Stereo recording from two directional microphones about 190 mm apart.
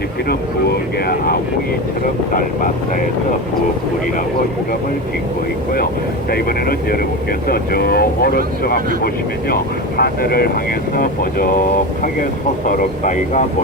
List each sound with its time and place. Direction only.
0.3 s speech: 55° left (ahead or behind)
6.3 s speech: 50° left (ahead or behind)
10.0 s speech: 55° left (ahead or behind)
12.6 s speech: 45° left (ahead or behind)